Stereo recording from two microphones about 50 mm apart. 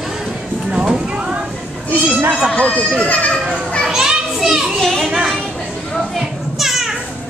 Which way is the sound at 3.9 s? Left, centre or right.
Centre.